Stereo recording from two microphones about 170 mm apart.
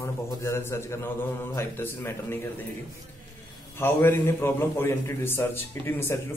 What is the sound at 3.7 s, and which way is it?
A man's voice, 10° left (ahead or behind).